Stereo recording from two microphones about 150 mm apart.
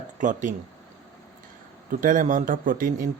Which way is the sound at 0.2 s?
55° right (ahead or behind).